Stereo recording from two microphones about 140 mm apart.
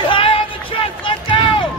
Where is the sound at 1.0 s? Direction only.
35° left (ahead or behind).